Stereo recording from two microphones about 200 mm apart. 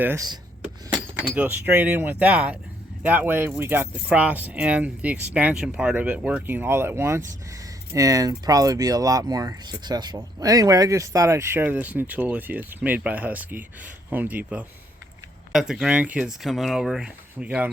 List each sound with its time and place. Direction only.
0.0 s speech: 10° right (ahead or behind)